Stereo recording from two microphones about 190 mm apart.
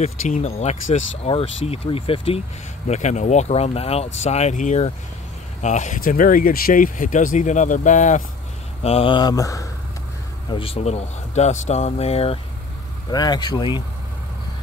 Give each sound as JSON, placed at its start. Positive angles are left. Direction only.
{"t": 0.0, "sound": "speech", "side_deg": 35}
{"t": 8.8, "sound": "speech", "side_deg": 30}
{"t": 10.5, "sound": "speech", "side_deg": 30}
{"t": 13.1, "sound": "speech", "side_deg": 20}